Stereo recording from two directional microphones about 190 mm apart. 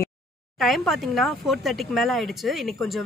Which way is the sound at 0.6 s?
Centre (ahead or behind).